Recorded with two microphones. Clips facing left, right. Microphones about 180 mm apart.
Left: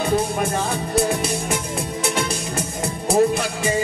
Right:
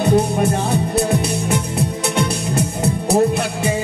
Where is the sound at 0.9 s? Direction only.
65° right (ahead or behind).